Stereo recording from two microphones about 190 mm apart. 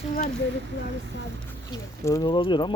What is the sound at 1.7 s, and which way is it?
Speech, 20° left (ahead or behind).